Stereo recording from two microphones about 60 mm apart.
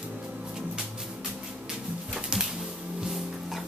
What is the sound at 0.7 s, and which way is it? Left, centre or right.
Music, centre.